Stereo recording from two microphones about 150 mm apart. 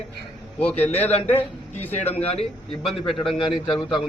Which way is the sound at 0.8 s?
45° left (ahead or behind).